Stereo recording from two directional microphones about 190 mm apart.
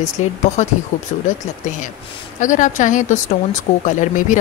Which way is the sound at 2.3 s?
40° left (ahead or behind).